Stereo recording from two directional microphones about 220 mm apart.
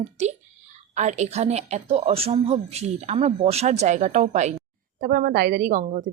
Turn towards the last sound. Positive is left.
turn(degrees=-35)  # may be behind; listen again after turning